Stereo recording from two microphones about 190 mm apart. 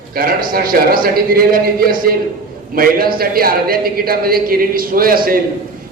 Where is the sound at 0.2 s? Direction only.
50° right (ahead or behind).